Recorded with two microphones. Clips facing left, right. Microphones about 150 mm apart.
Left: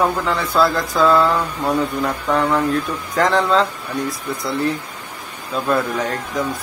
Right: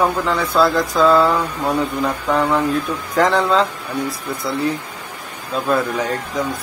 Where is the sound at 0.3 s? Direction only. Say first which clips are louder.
Right 1 dB; centre (ahead or behind).